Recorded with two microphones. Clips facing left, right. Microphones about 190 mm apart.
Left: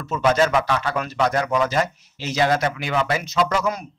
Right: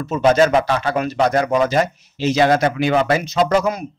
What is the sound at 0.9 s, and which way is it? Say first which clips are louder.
Speech: right 5 dB; 15° right (ahead or behind).